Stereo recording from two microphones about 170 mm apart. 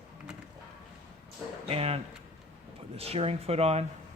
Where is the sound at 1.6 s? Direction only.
35° right (ahead or behind).